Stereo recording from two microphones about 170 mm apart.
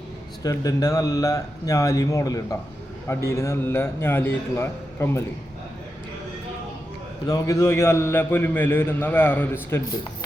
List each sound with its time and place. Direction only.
0.4 s a man's voice: 20° left (ahead or behind)
7.3 s a man's voice: 20° left (ahead or behind)